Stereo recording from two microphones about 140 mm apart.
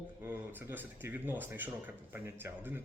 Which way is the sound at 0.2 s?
15° right (ahead or behind).